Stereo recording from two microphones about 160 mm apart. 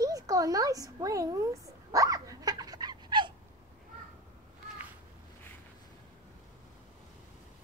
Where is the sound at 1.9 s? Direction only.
20° right (ahead or behind).